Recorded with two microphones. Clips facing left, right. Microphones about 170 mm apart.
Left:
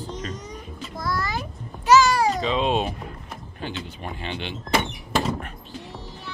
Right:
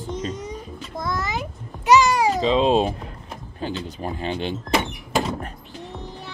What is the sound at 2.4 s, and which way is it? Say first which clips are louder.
Speech: right 5 dB; 30° right (ahead or behind).